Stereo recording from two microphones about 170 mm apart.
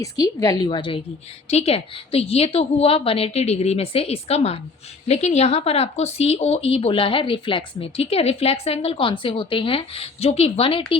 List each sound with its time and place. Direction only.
0.0 s a woman's voice: 20° left (ahead or behind)